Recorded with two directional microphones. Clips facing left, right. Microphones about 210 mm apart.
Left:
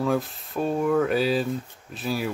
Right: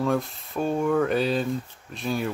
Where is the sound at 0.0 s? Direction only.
Centre (ahead or behind).